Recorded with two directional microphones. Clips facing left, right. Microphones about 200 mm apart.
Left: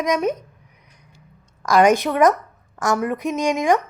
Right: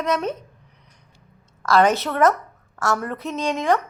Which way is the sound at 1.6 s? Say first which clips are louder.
Left 3 dB; 15° left (ahead or behind).